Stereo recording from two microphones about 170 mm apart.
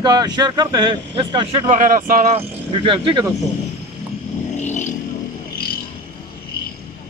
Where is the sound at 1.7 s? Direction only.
50° right (ahead or behind); by 3.3 s 30° right (ahead or behind).